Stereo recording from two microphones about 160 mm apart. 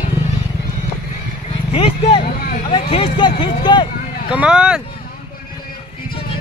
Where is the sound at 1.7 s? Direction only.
35° left (ahead or behind).